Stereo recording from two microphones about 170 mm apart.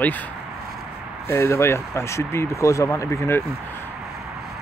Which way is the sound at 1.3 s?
15° left (ahead or behind).